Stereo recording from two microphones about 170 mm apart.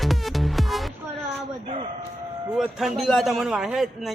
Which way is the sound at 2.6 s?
Centre (ahead or behind).